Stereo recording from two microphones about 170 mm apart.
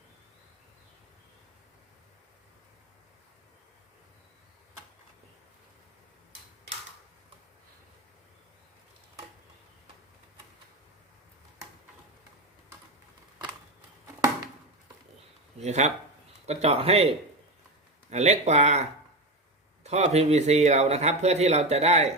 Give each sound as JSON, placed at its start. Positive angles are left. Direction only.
{"t": 15.6, "sound": "a man's voice", "side_deg": -45}
{"t": 18.1, "sound": "a man's voice", "side_deg": -40}